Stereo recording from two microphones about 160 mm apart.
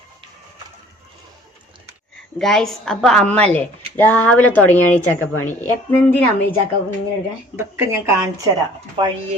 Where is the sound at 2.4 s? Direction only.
Centre (ahead or behind).